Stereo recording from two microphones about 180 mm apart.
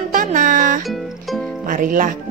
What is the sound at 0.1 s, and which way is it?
Music, 45° right (ahead or behind).